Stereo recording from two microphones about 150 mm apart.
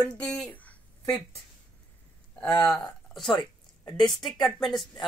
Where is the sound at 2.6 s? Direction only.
5° left (ahead or behind).